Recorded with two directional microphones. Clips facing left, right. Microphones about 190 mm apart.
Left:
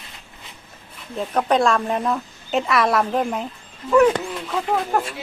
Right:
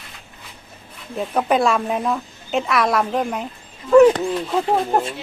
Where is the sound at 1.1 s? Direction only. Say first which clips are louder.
Right 1 dB; 5° right (ahead or behind).